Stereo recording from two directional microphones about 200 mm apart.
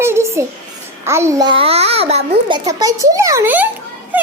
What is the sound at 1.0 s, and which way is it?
A child's voice, 15° right (ahead or behind).